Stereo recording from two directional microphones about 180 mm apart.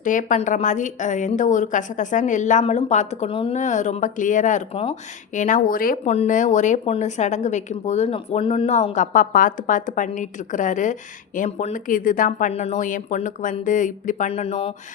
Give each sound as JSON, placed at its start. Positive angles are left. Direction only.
{"t": 0.0, "sound": "a woman's voice", "side_deg": 45}
{"t": 3.6, "sound": "a woman's voice", "side_deg": 40}
{"t": 6.1, "sound": "a woman's voice", "side_deg": 40}